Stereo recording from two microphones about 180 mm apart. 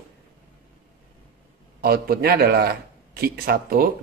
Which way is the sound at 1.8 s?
55° right (ahead or behind).